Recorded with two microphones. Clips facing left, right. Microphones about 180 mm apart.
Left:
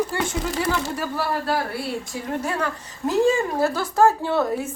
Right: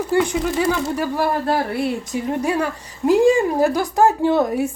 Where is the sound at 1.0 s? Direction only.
20° right (ahead or behind).